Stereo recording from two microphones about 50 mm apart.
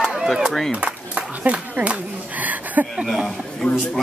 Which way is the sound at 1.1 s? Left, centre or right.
Right.